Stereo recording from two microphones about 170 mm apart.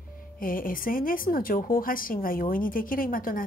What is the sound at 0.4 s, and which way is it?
Speech, 55° left (ahead or behind).